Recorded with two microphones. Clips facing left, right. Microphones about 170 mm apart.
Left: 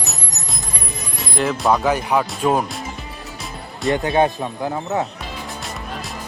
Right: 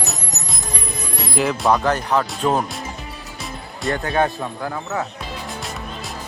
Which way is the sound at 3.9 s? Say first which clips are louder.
Left 3 dB; 20° left (ahead or behind).